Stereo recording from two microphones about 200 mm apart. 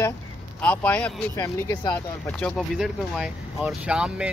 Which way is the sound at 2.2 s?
5° left (ahead or behind).